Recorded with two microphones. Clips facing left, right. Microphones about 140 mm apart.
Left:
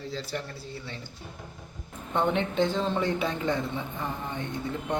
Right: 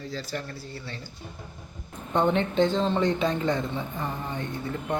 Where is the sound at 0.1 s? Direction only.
25° left (ahead or behind).